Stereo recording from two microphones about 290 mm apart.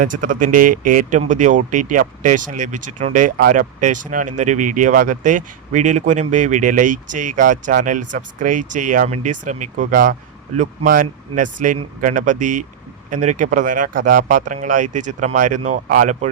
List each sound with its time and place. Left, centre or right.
0.0 s speech: right